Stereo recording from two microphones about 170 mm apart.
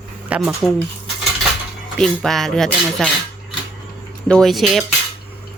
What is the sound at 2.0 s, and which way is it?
Speech, centre (ahead or behind).